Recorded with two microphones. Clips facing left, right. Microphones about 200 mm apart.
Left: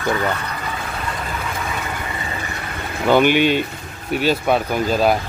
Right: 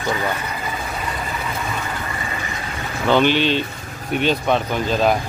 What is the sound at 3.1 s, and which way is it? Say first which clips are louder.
Speech: left 2 dB; 10° left (ahead or behind).